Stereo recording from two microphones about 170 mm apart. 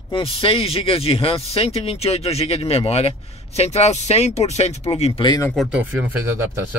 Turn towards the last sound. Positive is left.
turn(degrees=-15)  # may be behind; listen again after turning